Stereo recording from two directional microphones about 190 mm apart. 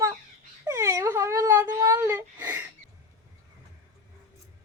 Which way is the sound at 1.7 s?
15° right (ahead or behind).